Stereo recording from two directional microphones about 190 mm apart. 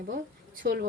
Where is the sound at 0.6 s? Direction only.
50° right (ahead or behind).